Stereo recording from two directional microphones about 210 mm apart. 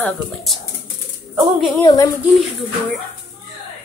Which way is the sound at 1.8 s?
15° left (ahead or behind).